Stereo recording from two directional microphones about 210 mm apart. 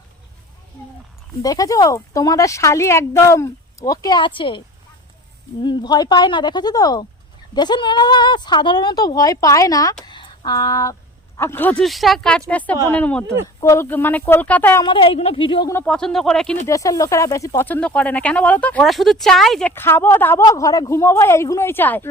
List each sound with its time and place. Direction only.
1.4 s speech: 15° left (ahead or behind)
5.6 s speech: 20° left (ahead or behind)
10.0 s a sound: 20° left (ahead or behind)
11.3 s speech: 10° left (ahead or behind)
14.8 s speech: 25° left (ahead or behind)
15.7 s speech: 5° left (ahead or behind)
16.6 s speech: 15° left (ahead or behind)